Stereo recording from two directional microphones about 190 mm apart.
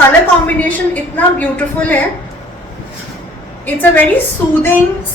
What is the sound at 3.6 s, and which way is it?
Speech, 10° left (ahead or behind).